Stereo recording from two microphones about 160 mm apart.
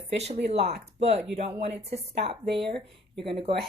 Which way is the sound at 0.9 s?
40° right (ahead or behind).